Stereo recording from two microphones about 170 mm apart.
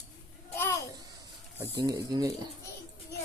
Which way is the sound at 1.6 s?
25° right (ahead or behind).